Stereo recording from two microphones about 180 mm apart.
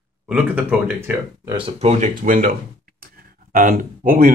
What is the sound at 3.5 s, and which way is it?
Speech, 50° right (ahead or behind).